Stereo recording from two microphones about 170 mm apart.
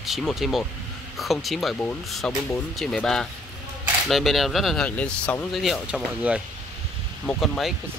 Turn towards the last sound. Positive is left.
turn(degrees=0)  # may be behind; listen again after turning